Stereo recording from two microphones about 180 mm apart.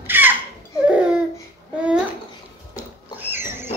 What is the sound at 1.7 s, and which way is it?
Babbling, 5° right (ahead or behind).